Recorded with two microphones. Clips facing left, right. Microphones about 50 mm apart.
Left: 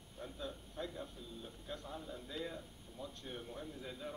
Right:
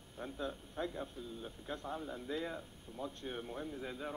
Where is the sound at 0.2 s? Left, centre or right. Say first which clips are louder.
Right 4 dB; right.